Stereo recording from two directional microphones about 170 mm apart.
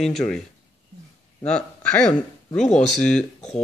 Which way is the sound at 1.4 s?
5° left (ahead or behind).